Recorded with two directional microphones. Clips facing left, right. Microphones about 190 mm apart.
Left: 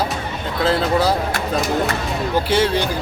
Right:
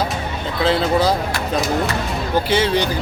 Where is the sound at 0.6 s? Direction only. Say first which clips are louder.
Right 1 dB; 5° left (ahead or behind).